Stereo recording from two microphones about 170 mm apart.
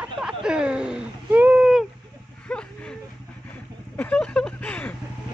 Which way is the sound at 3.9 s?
10° left (ahead or behind).